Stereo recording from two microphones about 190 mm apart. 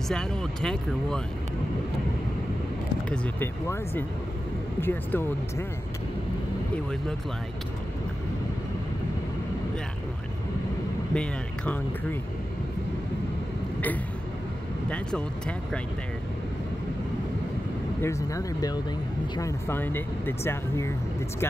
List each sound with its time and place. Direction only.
0.1 s speech: 5° left (ahead or behind)
3.1 s speech: 10° left (ahead or behind)
11.1 s speech: 10° left (ahead or behind)
14.9 s speech: 5° left (ahead or behind)
18.0 s speech: 15° left (ahead or behind)